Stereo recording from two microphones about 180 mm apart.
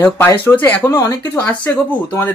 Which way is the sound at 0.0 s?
10° left (ahead or behind).